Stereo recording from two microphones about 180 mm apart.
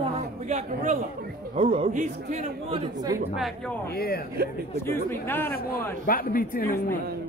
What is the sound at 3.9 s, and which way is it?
Speech, 60° left (ahead or behind).